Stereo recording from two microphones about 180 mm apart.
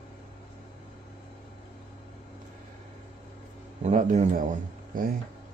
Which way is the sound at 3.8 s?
40° right (ahead or behind).